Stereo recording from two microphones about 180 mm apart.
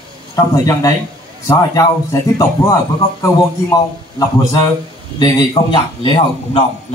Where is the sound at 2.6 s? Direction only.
15° left (ahead or behind).